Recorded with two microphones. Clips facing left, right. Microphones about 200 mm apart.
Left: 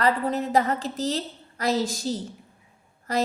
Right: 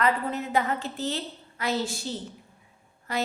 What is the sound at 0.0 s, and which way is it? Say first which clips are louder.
A woman's voice: left 3 dB; 35° left (ahead or behind).